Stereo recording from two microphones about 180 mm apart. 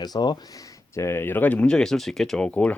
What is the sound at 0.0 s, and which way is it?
Speech, 25° left (ahead or behind).